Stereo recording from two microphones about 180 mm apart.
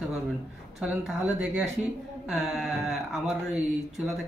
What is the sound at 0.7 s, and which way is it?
Speech, 5° right (ahead or behind).